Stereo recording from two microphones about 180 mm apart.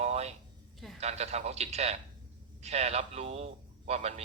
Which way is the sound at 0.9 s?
35° right (ahead or behind).